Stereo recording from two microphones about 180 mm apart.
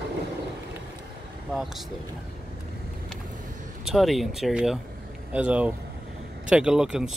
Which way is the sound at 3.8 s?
Centre (ahead or behind).